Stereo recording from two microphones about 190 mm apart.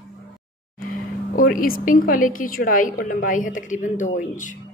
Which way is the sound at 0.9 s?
45° left (ahead or behind).